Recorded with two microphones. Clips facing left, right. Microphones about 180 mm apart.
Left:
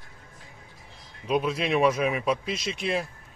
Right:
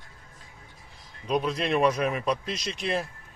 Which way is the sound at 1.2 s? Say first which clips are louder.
Left 1 dB; 5° left (ahead or behind).